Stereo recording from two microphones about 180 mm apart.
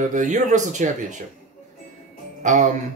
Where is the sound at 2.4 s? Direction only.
45° right (ahead or behind).